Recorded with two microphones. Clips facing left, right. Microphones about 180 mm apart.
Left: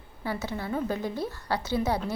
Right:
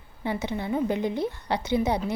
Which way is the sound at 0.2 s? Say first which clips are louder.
Right 3 dB; 20° right (ahead or behind).